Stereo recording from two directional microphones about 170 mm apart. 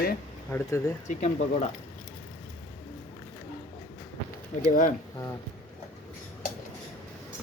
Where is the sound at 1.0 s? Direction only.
40° left (ahead or behind).